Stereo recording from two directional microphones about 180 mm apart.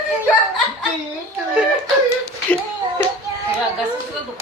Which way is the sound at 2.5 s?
5° left (ahead or behind).